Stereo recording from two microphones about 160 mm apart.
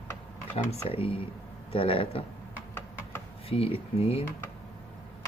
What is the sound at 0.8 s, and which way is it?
Speech, 35° left (ahead or behind).